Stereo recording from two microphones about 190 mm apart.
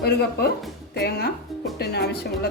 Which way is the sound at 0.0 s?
55° left (ahead or behind).